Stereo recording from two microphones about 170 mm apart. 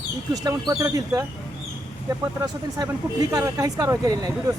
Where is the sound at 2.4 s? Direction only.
20° right (ahead or behind).